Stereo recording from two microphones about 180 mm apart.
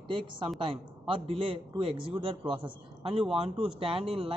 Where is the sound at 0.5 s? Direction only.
30° right (ahead or behind).